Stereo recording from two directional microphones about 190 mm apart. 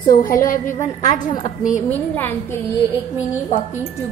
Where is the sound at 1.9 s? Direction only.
10° left (ahead or behind).